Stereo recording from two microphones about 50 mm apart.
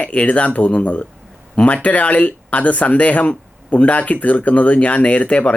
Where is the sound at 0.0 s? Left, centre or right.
Left.